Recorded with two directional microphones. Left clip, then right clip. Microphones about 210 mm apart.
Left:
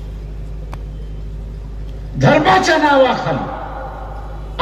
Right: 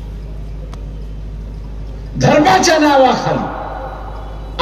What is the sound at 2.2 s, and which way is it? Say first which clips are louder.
Speech: right 1 dB; 45° right (ahead or behind).